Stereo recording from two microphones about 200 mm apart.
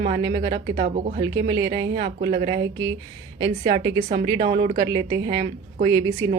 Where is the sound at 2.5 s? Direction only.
20° right (ahead or behind).